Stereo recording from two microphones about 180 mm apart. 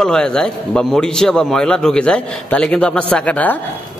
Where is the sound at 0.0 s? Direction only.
5° left (ahead or behind).